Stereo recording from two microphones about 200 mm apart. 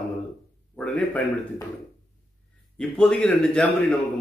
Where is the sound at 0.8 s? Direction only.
10° left (ahead or behind).